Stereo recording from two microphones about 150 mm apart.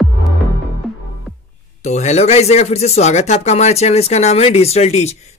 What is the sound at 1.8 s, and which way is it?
Speech, 50° left (ahead or behind).